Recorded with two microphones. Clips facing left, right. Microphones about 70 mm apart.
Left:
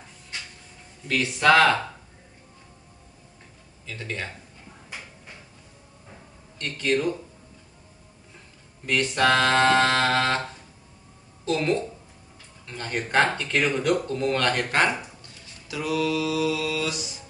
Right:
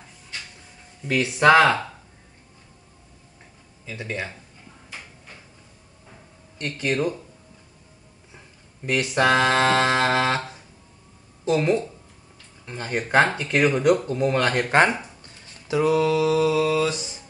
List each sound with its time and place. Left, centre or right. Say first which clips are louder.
1.0 s speech: right 3 dB; centre
3.8 s speech: right 3 dB; centre
6.6 s speech: even; centre
8.8 s speech: right 1 dB; centre
11.4 s speech: right 3 dB; centre
14.7 s speech: right 6 dB; right
15.4 s mantra: right 9 dB; right